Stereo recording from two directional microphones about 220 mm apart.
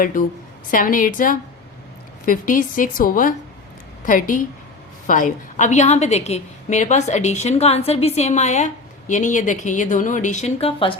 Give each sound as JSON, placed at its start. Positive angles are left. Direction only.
{"t": 0.0, "sound": "a woman's voice", "side_deg": 40}